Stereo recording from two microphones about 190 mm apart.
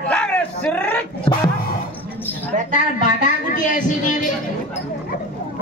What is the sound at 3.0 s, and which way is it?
Speech, 45° left (ahead or behind).